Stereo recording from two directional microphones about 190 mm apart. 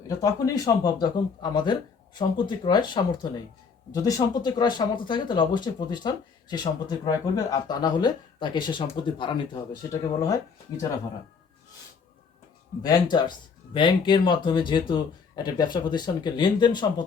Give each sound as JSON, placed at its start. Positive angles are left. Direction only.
{"t": 0.1, "sound": "speech", "side_deg": 20}
{"t": 12.8, "sound": "speech", "side_deg": 20}